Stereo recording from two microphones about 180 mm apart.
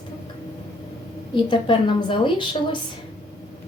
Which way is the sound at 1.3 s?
25° left (ahead or behind).